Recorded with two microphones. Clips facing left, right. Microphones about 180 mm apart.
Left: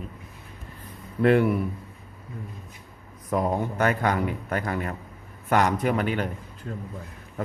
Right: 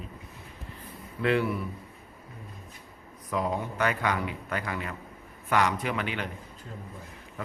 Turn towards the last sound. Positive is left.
turn(degrees=45)  # may be behind; listen again after turning